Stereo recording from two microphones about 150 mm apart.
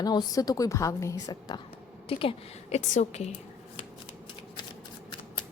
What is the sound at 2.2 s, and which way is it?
Speech, 35° left (ahead or behind).